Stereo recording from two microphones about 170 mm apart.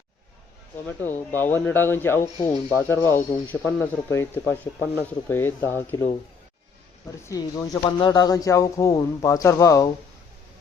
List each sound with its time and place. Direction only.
0.9 s speech: 10° left (ahead or behind)
7.3 s speech: 20° left (ahead or behind)